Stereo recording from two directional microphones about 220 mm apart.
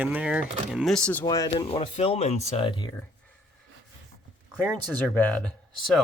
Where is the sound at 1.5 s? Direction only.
25° left (ahead or behind).